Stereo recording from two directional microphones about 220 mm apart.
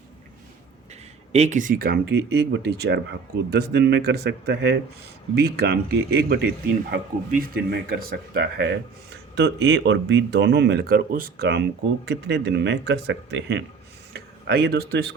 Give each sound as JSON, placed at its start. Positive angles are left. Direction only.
{"t": 1.3, "sound": "speech", "side_deg": -30}